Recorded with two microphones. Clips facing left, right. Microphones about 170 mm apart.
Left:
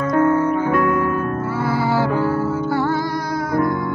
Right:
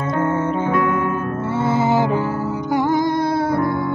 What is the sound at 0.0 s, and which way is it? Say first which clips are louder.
Music: left 4 dB; 25° right (ahead or behind).